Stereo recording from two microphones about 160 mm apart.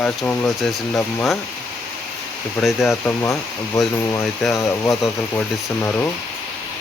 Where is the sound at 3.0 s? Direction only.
15° left (ahead or behind).